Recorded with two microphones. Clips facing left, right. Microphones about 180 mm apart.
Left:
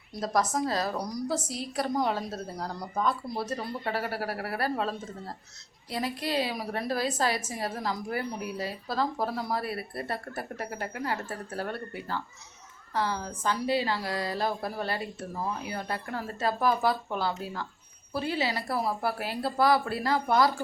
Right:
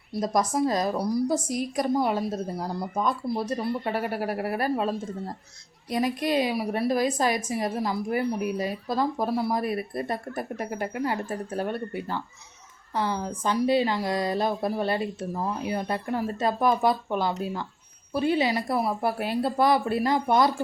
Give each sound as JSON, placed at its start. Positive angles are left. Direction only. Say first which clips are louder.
{"t": 0.2, "sound": "a woman's voice", "louder": "right 3 dB", "side_deg": -15}